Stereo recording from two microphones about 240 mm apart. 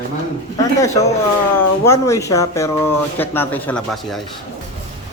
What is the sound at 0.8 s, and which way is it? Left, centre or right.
Speech, centre.